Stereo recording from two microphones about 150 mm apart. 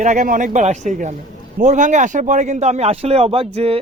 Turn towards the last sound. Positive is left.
turn(degrees=-40)  # may be behind; listen again after turning